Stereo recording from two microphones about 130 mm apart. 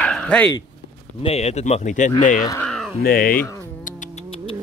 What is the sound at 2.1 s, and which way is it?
Speech, 80° left.